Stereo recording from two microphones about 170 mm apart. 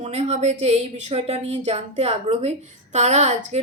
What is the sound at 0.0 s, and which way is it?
Speech, 40° right (ahead or behind).